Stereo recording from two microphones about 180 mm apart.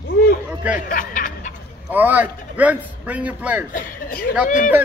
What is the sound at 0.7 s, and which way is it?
Speech, 45° left (ahead or behind).